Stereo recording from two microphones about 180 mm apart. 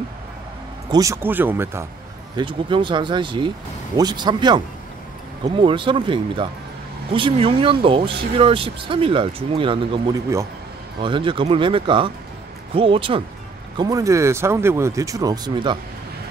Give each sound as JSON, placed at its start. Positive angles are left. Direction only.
{"t": 0.9, "sound": "speech", "side_deg": -15}
{"t": 2.3, "sound": "speech", "side_deg": -25}
{"t": 5.6, "sound": "speech", "side_deg": -25}
{"t": 13.7, "sound": "speech", "side_deg": -20}